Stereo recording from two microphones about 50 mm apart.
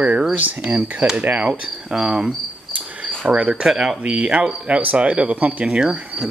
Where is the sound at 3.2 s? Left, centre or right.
Right.